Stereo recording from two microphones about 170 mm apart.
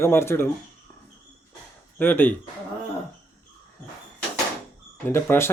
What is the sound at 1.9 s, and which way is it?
Speech, 10° left (ahead or behind).